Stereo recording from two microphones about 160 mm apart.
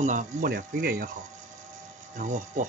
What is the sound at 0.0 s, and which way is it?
Speech, 55° right (ahead or behind).